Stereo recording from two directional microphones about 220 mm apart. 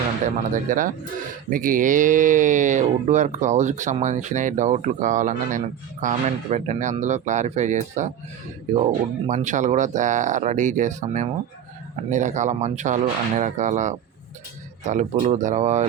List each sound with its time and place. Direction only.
0.5 s speech: 35° right (ahead or behind)